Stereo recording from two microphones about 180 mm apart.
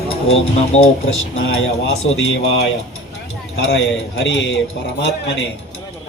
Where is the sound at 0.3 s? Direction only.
35° left (ahead or behind).